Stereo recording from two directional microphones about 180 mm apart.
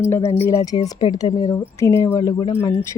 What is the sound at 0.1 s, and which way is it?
Speech, 15° left (ahead or behind).